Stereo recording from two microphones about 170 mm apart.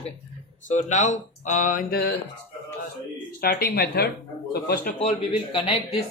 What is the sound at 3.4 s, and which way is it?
Speech, 65° left (ahead or behind).